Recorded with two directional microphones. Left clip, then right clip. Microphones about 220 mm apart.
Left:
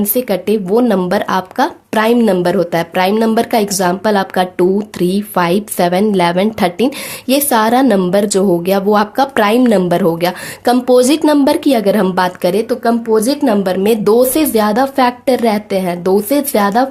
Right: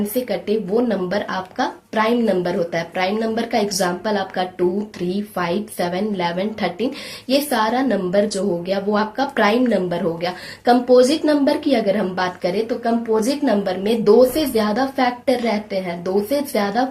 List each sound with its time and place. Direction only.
0.1 s speech: 55° left (ahead or behind)